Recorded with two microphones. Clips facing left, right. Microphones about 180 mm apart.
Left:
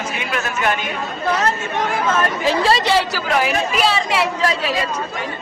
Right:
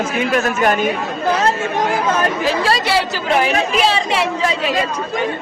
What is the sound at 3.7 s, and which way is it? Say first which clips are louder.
Speech: right 2 dB; centre (ahead or behind).